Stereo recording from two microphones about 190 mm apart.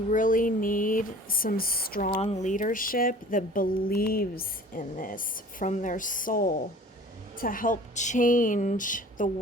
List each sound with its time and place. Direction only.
0.1 s speech: 45° left (ahead or behind)
2.0 s speech: 30° left (ahead or behind)